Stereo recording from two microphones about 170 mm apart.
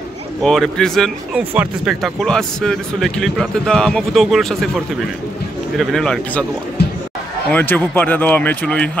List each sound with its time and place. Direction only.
0.4 s speech: centre (ahead or behind)
6.8 s a sound: 70° left (ahead or behind)
7.5 s speech: 10° left (ahead or behind)